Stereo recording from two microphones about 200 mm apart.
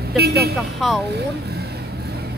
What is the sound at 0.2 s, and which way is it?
Speech, 50° right (ahead or behind).